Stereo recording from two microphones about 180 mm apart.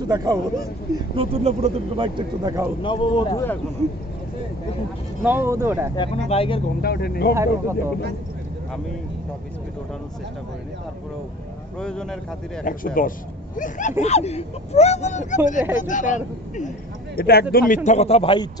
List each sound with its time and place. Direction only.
0.0 s speech: 20° right (ahead or behind)
1.1 s speech: 30° right (ahead or behind)
2.8 s a man's voice: 30° left (ahead or behind)
5.2 s speech: 10° right (ahead or behind)
6.2 s speech: 30° left (ahead or behind)
6.8 s speech: 60° left (ahead or behind)
7.3 s speech: 15° right (ahead or behind)
11.8 s speech: 5° left (ahead or behind)
12.6 s speech: 50° left (ahead or behind)
17.8 s speech: 35° left (ahead or behind)